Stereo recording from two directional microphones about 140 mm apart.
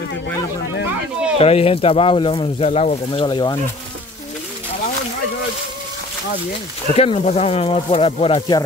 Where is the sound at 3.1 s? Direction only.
35° left (ahead or behind).